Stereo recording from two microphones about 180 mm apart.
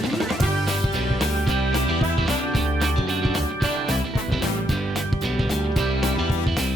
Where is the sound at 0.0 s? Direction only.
Centre (ahead or behind).